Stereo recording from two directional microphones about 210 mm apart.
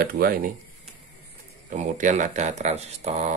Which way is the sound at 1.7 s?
35° right (ahead or behind).